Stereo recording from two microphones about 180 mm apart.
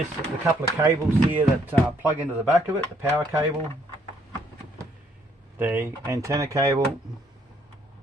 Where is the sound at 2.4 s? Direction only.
10° right (ahead or behind).